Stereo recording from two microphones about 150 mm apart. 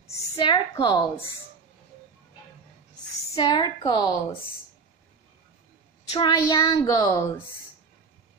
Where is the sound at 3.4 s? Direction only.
30° left (ahead or behind).